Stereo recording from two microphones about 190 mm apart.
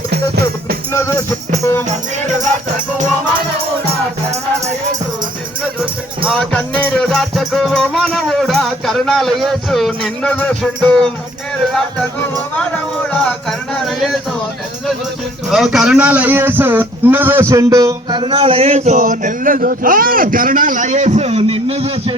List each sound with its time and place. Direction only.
0.1 s music: 60° right (ahead or behind)
0.9 s music: 15° left (ahead or behind)
5.8 s music: 5° right (ahead or behind)
12.5 s speech: 5° left (ahead or behind)
15.4 s a man's voice: centre (ahead or behind); by 22.1 s 30° right (ahead or behind)